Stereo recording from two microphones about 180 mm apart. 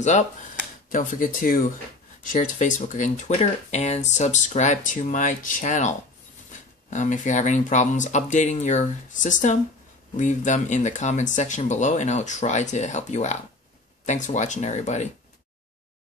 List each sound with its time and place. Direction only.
0.9 s speech: 50° left (ahead or behind)